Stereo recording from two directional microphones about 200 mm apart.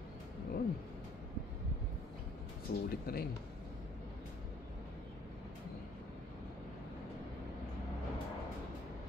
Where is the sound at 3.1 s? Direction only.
50° left (ahead or behind).